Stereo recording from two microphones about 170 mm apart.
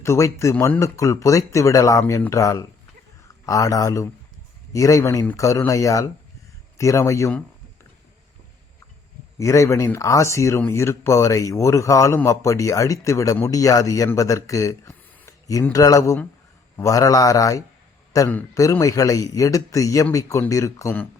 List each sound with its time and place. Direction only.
0.0 s a man's voice: 15° left (ahead or behind)
9.4 s speech: 15° left (ahead or behind)